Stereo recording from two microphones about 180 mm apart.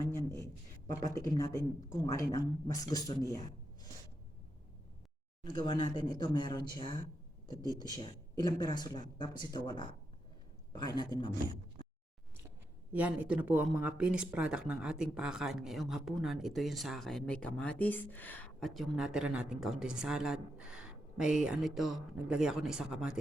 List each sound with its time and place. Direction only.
1.0 s speech: 20° left (ahead or behind)
5.4 s speech: 25° left (ahead or behind)
12.9 s speech: 10° right (ahead or behind)